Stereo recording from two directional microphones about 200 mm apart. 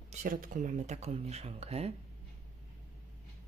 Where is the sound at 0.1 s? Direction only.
45° right (ahead or behind).